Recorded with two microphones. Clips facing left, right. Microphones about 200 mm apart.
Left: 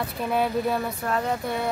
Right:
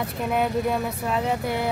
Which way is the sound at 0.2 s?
Centre (ahead or behind).